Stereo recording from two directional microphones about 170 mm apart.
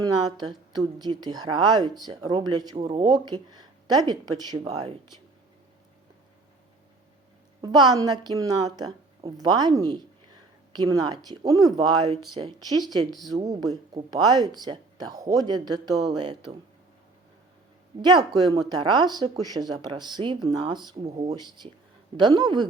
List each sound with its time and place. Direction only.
0.0 s speech: 25° right (ahead or behind)
2.7 s speech: 35° right (ahead or behind)
7.6 s speech: 25° right (ahead or behind)
18.0 s speech: 25° right (ahead or behind)